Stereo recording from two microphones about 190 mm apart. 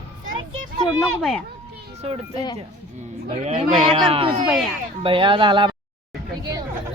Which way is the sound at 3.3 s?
35° right (ahead or behind).